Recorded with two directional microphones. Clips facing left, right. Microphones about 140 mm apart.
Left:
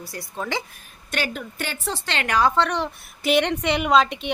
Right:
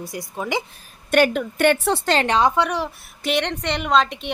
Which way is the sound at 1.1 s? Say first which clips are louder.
Right 11 dB; 55° right (ahead or behind).